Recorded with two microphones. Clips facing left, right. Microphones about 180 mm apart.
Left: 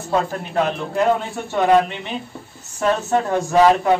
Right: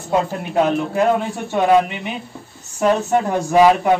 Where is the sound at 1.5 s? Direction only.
10° right (ahead or behind).